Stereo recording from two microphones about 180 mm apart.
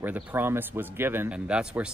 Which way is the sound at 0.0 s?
10° right (ahead or behind).